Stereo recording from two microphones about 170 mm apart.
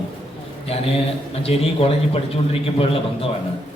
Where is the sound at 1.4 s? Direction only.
35° left (ahead or behind).